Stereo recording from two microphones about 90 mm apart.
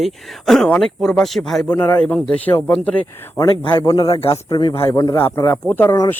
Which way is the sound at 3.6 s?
70° left (ahead or behind).